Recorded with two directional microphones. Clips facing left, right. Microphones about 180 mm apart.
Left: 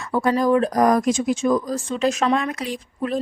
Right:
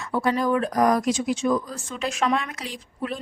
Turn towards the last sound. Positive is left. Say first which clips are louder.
# left 6 dB
turn(degrees=45)  # may be behind; listen again after turning